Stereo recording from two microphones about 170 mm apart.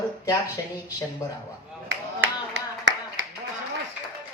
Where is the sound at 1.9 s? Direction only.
90° right.